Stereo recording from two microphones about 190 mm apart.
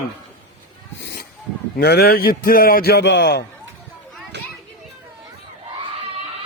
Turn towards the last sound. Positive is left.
turn(degrees=-65)  # may be behind; listen again after turning